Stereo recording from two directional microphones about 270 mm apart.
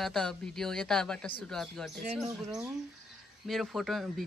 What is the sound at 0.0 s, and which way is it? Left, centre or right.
Speech, centre.